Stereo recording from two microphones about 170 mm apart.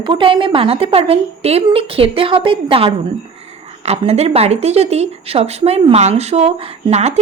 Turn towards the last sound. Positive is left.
turn(degrees=-40)  # may be behind; listen again after turning